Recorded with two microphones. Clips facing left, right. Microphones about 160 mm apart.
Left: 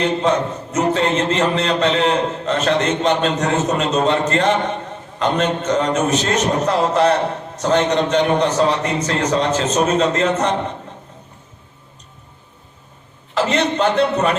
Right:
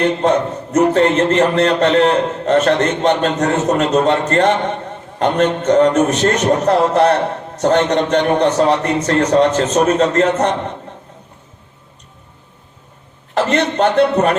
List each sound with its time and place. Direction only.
0.0 s a man's voice: 55° right (ahead or behind)
13.3 s a man's voice: 55° right (ahead or behind)